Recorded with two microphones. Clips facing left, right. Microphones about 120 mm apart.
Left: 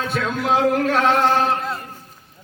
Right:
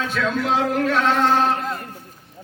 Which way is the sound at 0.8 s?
55° left (ahead or behind).